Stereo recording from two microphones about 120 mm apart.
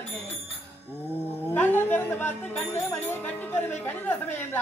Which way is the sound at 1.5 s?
15° left (ahead or behind).